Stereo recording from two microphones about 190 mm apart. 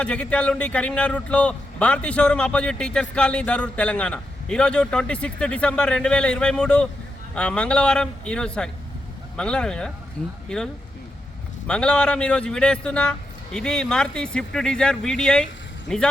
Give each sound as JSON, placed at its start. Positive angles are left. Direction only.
{"t": 0.0, "sound": "a man's voice", "side_deg": 5}
{"t": 11.7, "sound": "a man's voice", "side_deg": 5}